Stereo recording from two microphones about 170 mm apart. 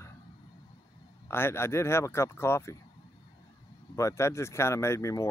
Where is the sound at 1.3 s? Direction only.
15° left (ahead or behind).